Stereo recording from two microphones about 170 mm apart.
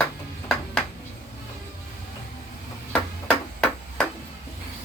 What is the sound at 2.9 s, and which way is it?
Chop, 5° left (ahead or behind).